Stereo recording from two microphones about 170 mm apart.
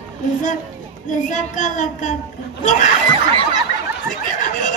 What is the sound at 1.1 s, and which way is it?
Child singing, 50° left (ahead or behind).